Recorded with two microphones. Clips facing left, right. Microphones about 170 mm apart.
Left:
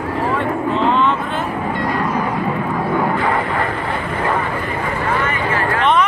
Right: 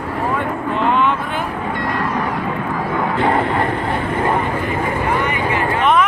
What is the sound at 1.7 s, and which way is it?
Vehicle, 5° left (ahead or behind).